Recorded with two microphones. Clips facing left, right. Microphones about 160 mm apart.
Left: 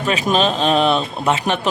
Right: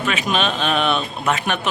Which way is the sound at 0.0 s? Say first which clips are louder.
Left 4 dB; 35° left (ahead or behind).